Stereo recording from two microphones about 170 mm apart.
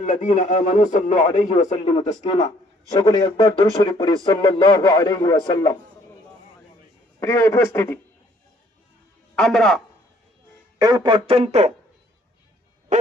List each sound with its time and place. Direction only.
0.0 s a man's voice: 45° left (ahead or behind); by 5.7 s 25° left (ahead or behind)
7.2 s speech: 15° left (ahead or behind)
9.3 s a man's voice: 5° left (ahead or behind)
10.8 s speech: 25° right (ahead or behind); by 11.7 s 40° right (ahead or behind)
12.9 s music: 45° right (ahead or behind)